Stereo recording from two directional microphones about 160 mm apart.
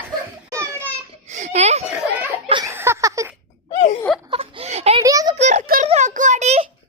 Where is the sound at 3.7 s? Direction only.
45° left (ahead or behind).